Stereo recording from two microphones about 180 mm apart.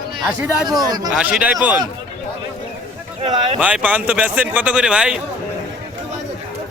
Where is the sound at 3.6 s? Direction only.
5° right (ahead or behind).